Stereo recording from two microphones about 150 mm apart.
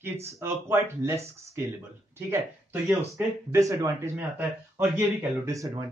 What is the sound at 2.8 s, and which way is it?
Speech, 20° right (ahead or behind).